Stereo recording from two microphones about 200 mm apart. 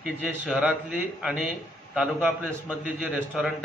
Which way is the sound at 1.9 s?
5° right (ahead or behind).